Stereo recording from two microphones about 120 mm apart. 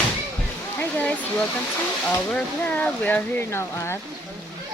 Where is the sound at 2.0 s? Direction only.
15° left (ahead or behind).